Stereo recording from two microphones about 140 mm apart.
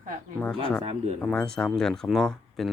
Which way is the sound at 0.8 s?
50° right (ahead or behind).